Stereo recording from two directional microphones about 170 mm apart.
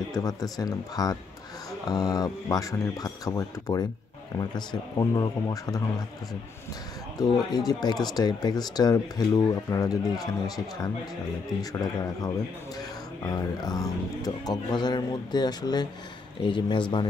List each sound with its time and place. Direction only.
0.1 s speech: 20° left (ahead or behind)
7.2 s speech: 25° left (ahead or behind)